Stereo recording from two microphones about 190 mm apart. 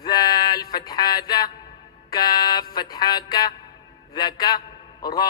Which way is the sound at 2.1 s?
20° left (ahead or behind).